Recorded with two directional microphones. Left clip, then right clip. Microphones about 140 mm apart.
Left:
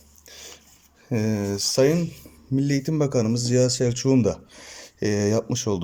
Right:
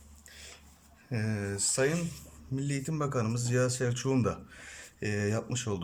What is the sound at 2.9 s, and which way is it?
Speech, 35° left (ahead or behind).